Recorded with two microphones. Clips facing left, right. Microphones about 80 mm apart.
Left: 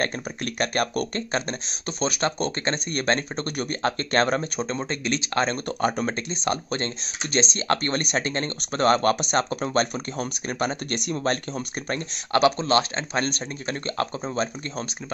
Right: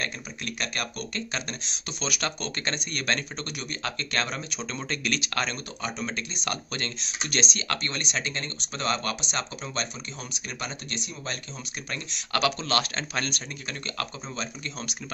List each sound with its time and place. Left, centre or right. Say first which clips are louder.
0.0 s speech: left 7 dB; left
5.8 s speech: left 9 dB; left
6.1 s speech: left 6 dB; left
11.9 s speech: left 7 dB; left